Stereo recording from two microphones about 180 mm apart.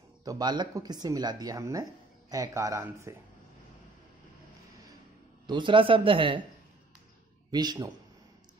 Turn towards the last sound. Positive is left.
turn(degrees=-20)  # may be behind; listen again after turning